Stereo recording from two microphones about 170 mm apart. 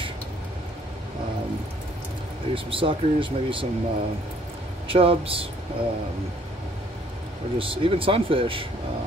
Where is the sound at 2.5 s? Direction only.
30° right (ahead or behind).